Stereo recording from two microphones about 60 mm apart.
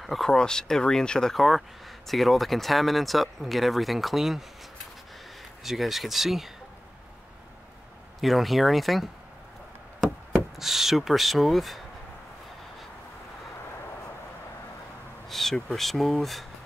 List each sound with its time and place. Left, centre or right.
0.0 s speech: centre
1.3 s speech: centre
5.6 s speech: centre
8.2 s speech: centre
15.2 s speech: centre